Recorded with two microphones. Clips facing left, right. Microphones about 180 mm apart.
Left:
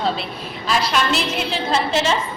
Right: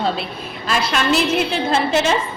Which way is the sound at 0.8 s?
55° right (ahead or behind).